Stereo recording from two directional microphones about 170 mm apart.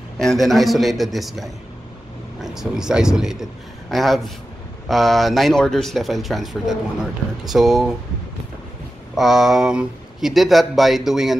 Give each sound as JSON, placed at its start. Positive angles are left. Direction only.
{"t": 0.2, "sound": "speech", "side_deg": 0}
{"t": 9.1, "sound": "speech", "side_deg": 0}